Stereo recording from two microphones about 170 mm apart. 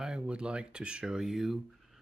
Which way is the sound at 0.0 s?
5° right (ahead or behind).